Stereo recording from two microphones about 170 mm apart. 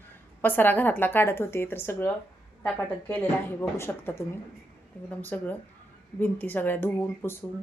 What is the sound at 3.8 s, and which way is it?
Speech, 15° left (ahead or behind).